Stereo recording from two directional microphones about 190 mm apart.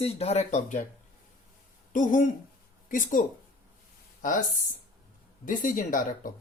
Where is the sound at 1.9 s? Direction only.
45° left (ahead or behind).